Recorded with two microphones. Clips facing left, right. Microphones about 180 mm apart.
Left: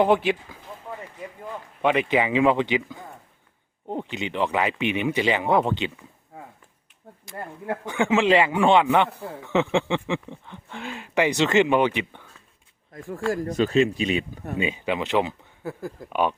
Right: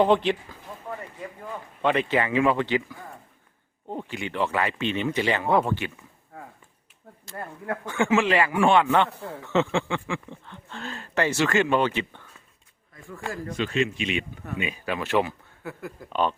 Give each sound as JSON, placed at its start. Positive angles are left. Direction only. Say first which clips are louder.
{"t": 0.0, "sound": "speech", "louder": "left 1 dB", "side_deg": 5}
{"t": 1.8, "sound": "speech", "louder": "left 2 dB", "side_deg": 10}
{"t": 7.9, "sound": "speech", "louder": "left 2 dB", "side_deg": 15}
{"t": 12.9, "sound": "speech", "louder": "left 8 dB", "side_deg": 45}
{"t": 14.7, "sound": "speech", "louder": "even", "side_deg": 20}
{"t": 16.0, "sound": "speech", "louder": "left 1 dB", "side_deg": 10}